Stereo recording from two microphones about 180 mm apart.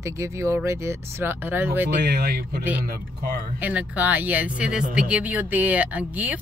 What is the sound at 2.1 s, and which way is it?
Speech, 55° right (ahead or behind).